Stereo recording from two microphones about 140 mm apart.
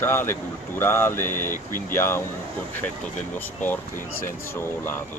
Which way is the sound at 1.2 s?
75° left (ahead or behind).